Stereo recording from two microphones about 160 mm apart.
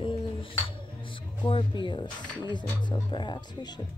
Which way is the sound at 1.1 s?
30° left (ahead or behind).